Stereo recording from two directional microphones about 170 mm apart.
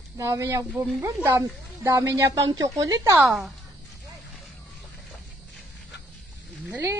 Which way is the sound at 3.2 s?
Centre (ahead or behind).